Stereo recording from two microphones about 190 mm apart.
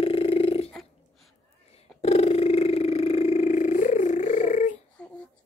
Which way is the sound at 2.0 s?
35° left (ahead or behind).